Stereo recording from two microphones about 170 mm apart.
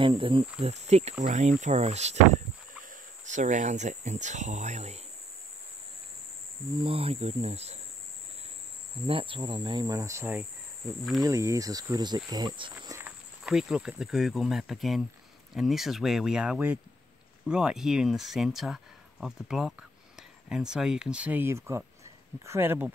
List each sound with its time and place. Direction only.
0.0 s speech: 30° right (ahead or behind)
3.3 s speech: 45° right (ahead or behind)
6.8 s speech: 35° right (ahead or behind)
9.0 s cricket: 30° right (ahead or behind)
13.4 s speech: centre (ahead or behind)